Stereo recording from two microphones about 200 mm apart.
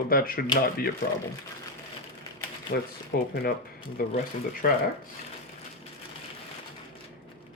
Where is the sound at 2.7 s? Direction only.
55° left (ahead or behind).